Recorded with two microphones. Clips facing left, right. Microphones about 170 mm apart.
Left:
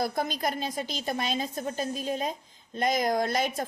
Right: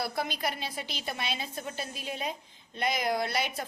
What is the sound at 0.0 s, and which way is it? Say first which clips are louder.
A woman's voice: left 4 dB; 45° left (ahead or behind).